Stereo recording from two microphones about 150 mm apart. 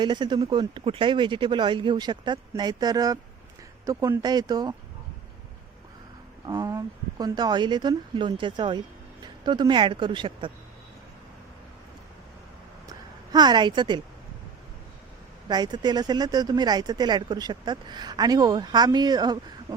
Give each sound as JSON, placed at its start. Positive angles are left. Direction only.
{"t": 0.0, "sound": "speech", "side_deg": -30}
{"t": 6.4, "sound": "speech", "side_deg": -25}
{"t": 12.9, "sound": "a sound", "side_deg": -25}
{"t": 15.4, "sound": "speech", "side_deg": -30}